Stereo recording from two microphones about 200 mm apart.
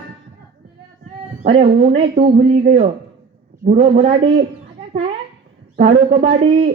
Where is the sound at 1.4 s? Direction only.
30° right (ahead or behind).